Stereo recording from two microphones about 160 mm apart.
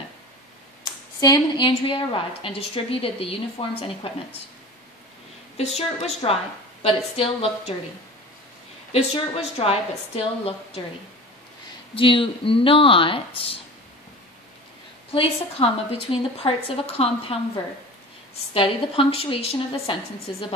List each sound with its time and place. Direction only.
0.8 s a woman's voice: 25° left (ahead or behind)
5.6 s a woman's voice: 45° left (ahead or behind)
8.9 s a woman's voice: 35° left (ahead or behind)
11.9 s a woman's voice: 35° left (ahead or behind)
15.1 s a woman's voice: 35° left (ahead or behind)
18.5 s a woman's voice: 35° left (ahead or behind)